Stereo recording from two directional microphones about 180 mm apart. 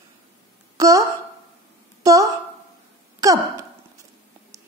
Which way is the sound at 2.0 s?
20° right (ahead or behind).